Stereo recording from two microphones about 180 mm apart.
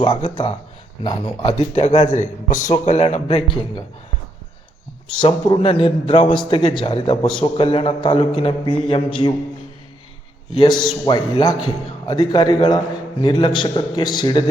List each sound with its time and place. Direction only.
0.0 s a man's voice: 30° left (ahead or behind)
2.0 s a man's voice: 45° left (ahead or behind)
5.2 s a man's voice: 30° left (ahead or behind)
6.2 s a man's voice: 5° left (ahead or behind)
6.5 s a man's voice: 30° left (ahead or behind)
10.8 s a man's voice: 25° left (ahead or behind)